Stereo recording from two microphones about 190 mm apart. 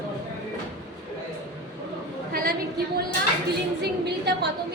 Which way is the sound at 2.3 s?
55° right (ahead or behind).